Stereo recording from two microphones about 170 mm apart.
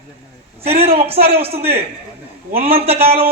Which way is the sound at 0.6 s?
35° right (ahead or behind).